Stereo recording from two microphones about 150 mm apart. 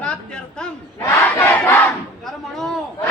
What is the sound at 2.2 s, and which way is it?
Speech, centre (ahead or behind).